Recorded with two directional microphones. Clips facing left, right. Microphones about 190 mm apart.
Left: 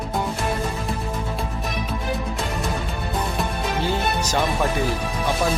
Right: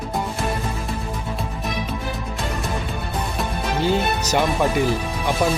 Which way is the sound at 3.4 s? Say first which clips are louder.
Even; centre (ahead or behind).